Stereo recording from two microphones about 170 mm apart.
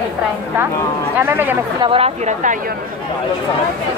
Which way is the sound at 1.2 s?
10° right (ahead or behind).